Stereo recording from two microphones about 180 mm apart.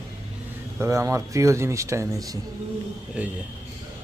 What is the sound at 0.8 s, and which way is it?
Speech, 15° right (ahead or behind).